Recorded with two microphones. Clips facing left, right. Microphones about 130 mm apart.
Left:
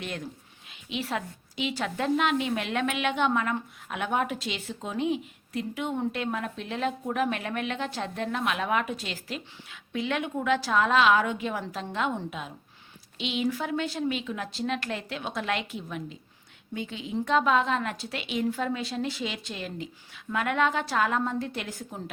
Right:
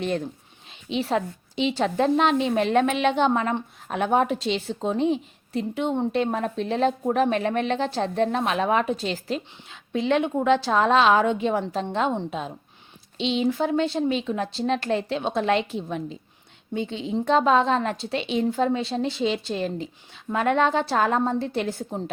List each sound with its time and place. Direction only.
0.9 s a woman's voice: 30° right (ahead or behind)